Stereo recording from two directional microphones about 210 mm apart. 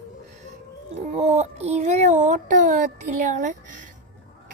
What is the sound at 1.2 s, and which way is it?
A child's voice, 30° right (ahead or behind).